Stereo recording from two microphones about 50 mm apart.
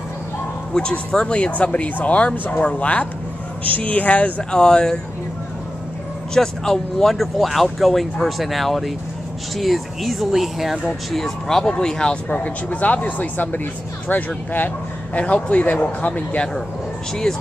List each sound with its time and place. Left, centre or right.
0.7 s speech: centre
4.5 s speech: centre
6.3 s speech: centre
10.9 s speech: centre; by 14.7 s left
15.1 s speech: left
17.1 s speech: centre